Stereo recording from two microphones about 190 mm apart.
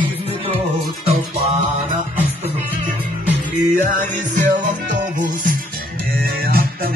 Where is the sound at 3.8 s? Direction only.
45° right (ahead or behind).